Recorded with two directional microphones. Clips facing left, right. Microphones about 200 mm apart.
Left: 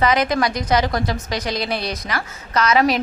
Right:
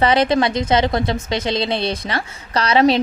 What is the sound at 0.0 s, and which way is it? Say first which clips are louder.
A woman's voice: right 3 dB; 30° right (ahead or behind).